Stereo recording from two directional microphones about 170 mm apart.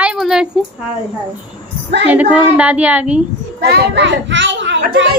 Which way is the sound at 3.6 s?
65° right (ahead or behind).